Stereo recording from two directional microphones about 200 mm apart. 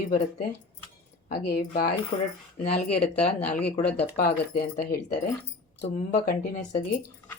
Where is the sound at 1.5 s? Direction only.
45° left (ahead or behind).